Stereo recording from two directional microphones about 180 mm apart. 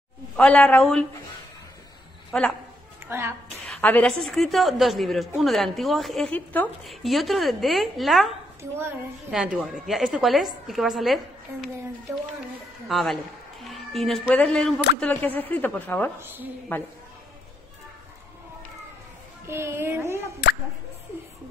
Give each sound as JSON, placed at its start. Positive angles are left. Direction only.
{"t": 0.4, "sound": "speech", "side_deg": 5}
{"t": 2.3, "sound": "a woman's voice", "side_deg": 5}
{"t": 3.1, "sound": "a child's voice", "side_deg": -15}
{"t": 3.6, "sound": "a sound", "side_deg": 5}
{"t": 4.2, "sound": "a woman's voice", "side_deg": 0}
{"t": 12.8, "sound": "a woman's voice", "side_deg": 0}
{"t": 16.2, "sound": "a woman's voice", "side_deg": -10}
{"t": 16.7, "sound": "speech", "side_deg": 10}
{"t": 19.4, "sound": "a woman's voice", "side_deg": -15}